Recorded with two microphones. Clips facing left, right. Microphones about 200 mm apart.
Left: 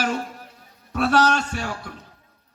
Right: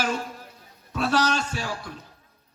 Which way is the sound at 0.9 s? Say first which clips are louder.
Left 4 dB; 65° left (ahead or behind).